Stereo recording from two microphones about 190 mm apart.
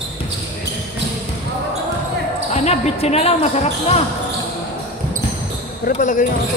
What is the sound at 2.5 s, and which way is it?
Speech, 35° left (ahead or behind).